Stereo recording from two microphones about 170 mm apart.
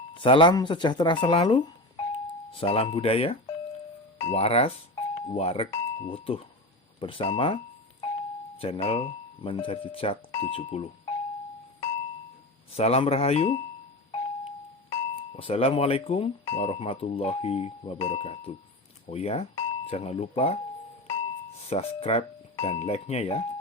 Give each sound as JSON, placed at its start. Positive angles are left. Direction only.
{"t": 0.1, "sound": "speech", "side_deg": 30}
{"t": 12.7, "sound": "speech", "side_deg": 35}
{"t": 14.8, "sound": "speech", "side_deg": 35}